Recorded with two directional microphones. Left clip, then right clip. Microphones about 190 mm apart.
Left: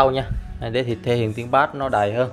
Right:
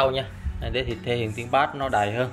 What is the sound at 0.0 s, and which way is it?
Speech, 30° left (ahead or behind).